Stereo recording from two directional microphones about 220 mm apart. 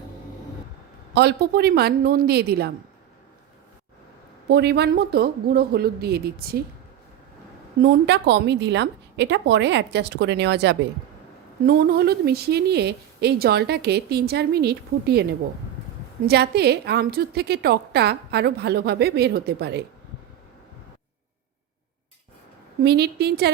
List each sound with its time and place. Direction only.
1.1 s a woman's voice: 50° right (ahead or behind)
4.4 s a woman's voice: 50° right (ahead or behind)
7.8 s a woman's voice: 50° right (ahead or behind)
22.8 s a woman's voice: 50° right (ahead or behind)